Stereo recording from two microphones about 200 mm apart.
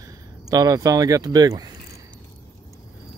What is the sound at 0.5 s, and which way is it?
Speech, 20° right (ahead or behind).